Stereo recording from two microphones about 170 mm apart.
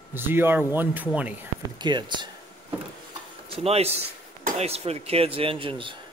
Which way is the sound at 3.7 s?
35° right (ahead or behind).